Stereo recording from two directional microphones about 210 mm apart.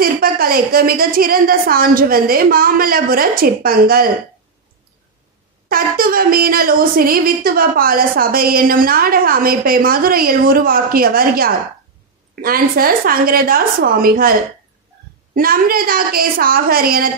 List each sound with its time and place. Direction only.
0.0 s speech: 45° right (ahead or behind)
5.7 s speech: 45° right (ahead or behind)
15.3 s speech: 45° right (ahead or behind)